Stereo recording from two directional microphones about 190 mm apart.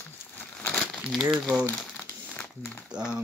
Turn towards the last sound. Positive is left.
turn(degrees=-5)  # may be behind; listen again after turning